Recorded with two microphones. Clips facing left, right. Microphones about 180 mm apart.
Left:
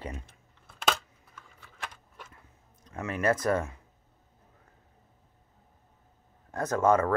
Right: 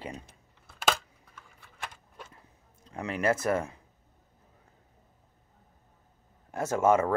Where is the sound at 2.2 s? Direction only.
30° right (ahead or behind).